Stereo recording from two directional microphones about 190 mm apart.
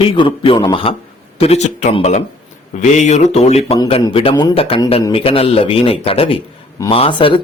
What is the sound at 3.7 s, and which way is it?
Speech, 25° left (ahead or behind).